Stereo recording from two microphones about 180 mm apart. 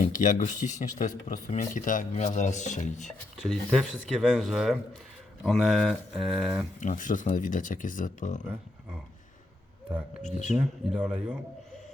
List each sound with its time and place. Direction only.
0.1 s speech: 45° left (ahead or behind)
3.1 s speech: centre (ahead or behind)
6.7 s speech: 45° left (ahead or behind)
10.2 s speech: 40° left (ahead or behind)
10.6 s speech: 5° right (ahead or behind)